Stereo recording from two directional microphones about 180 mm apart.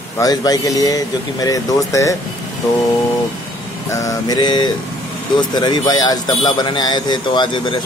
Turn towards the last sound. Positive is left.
turn(degrees=25)  # may be behind; listen again after turning